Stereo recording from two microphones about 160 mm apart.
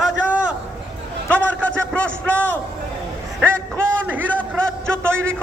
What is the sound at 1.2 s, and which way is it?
A man's voice, 10° left (ahead or behind).